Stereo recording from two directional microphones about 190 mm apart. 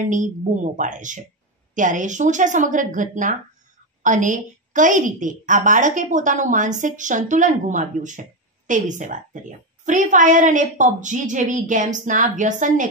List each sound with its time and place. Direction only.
0.0 s a woman's voice: 40° right (ahead or behind)